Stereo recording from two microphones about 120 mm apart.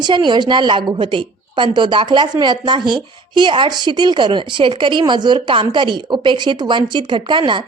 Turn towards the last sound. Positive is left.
turn(degrees=-40)  # may be behind; listen again after turning